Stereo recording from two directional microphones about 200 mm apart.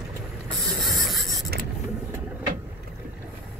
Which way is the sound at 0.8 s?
Centre (ahead or behind).